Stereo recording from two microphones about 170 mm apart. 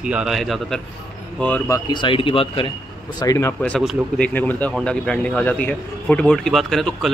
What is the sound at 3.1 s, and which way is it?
A man's voice, 20° left (ahead or behind).